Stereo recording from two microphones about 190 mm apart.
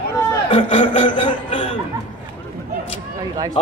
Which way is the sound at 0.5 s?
30° left (ahead or behind).